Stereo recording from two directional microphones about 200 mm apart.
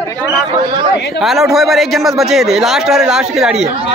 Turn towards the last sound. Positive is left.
turn(degrees=0)  # may be behind; listen again after turning